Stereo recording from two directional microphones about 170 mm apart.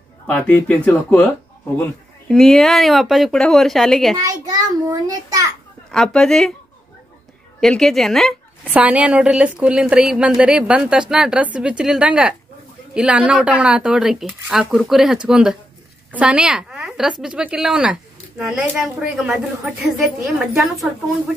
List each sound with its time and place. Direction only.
0.3 s speech: 10° left (ahead or behind)
4.2 s a child's voice: 20° right (ahead or behind)
5.9 s speech: 5° left (ahead or behind)
7.6 s a woman's voice: centre (ahead or behind)